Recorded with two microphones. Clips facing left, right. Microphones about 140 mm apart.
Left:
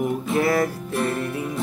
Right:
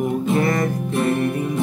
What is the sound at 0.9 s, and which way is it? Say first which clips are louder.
Music: right 5 dB; 20° right (ahead or behind).